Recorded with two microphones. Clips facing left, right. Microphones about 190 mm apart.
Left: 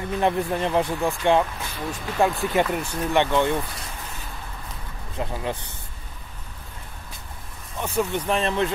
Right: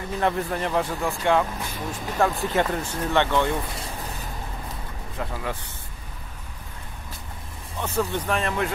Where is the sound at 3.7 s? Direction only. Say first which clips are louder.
Right 3 dB; 30° right (ahead or behind).